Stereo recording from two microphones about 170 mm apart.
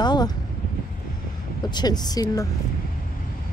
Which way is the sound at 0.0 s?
25° left (ahead or behind).